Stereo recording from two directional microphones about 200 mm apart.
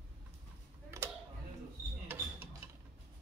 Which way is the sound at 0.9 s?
15° right (ahead or behind).